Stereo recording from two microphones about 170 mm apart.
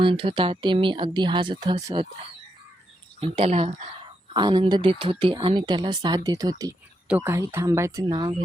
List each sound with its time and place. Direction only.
0.0 s speech: 30° right (ahead or behind)
3.2 s speech: 35° right (ahead or behind)
4.4 s speech: 25° right (ahead or behind)